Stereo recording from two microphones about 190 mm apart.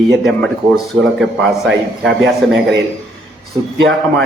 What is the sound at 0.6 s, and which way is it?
Speech, 30° right (ahead or behind).